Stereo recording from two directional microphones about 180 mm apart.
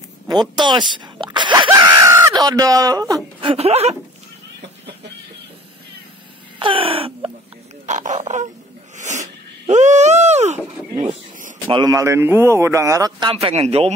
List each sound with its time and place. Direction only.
0.3 s speech: 25° right (ahead or behind)
3.3 s speech: 30° right (ahead or behind)
6.6 s wail: 30° right (ahead or behind)
7.8 s oink: 40° right (ahead or behind)
8.9 s wheeze: 40° right (ahead or behind)
9.7 s speech: 40° right (ahead or behind)
11.6 s speech: 20° right (ahead or behind)
13.3 s a man's voice: 35° right (ahead or behind)